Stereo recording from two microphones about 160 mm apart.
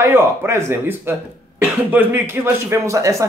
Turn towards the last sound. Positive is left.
turn(degrees=-20)  # may be behind; listen again after turning